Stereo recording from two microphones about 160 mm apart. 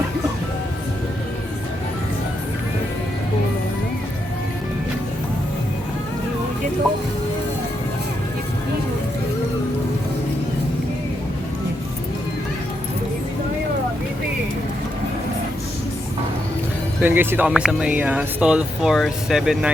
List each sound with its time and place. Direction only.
17.0 s speech: 15° right (ahead or behind)